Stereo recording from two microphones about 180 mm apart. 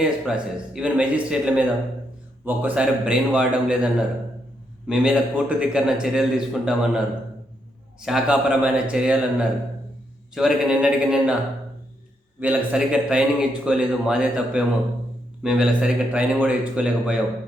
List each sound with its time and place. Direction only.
0.0 s a man's voice: 5° right (ahead or behind)
4.9 s a man's voice: 5° right (ahead or behind)
8.0 s a man's voice: 5° right (ahead or behind)
12.4 s a man's voice: 5° right (ahead or behind)